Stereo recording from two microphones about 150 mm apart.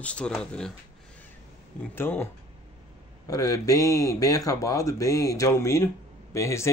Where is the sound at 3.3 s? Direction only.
25° left (ahead or behind).